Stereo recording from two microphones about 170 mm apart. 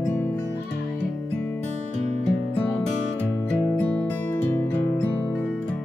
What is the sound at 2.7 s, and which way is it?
Music, 10° left (ahead or behind).